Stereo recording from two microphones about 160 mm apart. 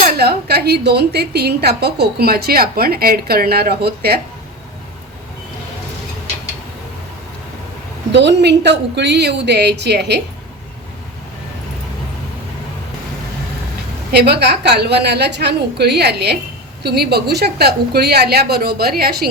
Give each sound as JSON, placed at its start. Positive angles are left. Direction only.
{"t": 0.0, "sound": "a woman's voice", "side_deg": -80}
{"t": 8.1, "sound": "a woman's voice", "side_deg": -90}
{"t": 14.1, "sound": "a woman's voice", "side_deg": -90}